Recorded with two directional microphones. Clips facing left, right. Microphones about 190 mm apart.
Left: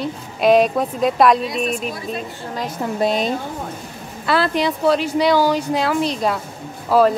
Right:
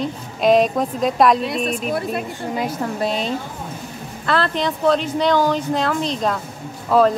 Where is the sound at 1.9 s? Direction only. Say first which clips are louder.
Right 4 dB; 60° right (ahead or behind).